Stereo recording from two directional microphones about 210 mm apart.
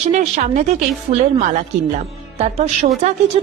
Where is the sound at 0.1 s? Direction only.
35° right (ahead or behind).